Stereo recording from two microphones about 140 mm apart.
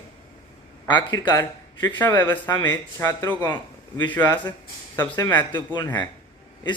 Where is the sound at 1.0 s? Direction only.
35° left (ahead or behind).